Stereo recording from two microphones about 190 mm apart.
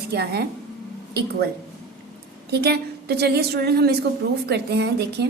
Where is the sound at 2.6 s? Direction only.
60° right (ahead or behind).